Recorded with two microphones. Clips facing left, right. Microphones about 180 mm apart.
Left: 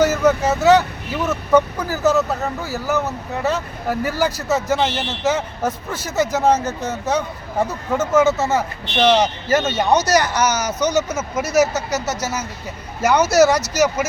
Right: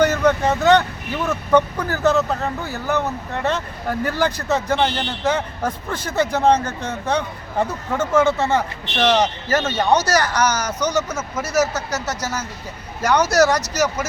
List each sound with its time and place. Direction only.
0.0 s vehicle: 5° left (ahead or behind)
1.3 s speech: 5° left (ahead or behind)
9.5 s speech: 20° left (ahead or behind)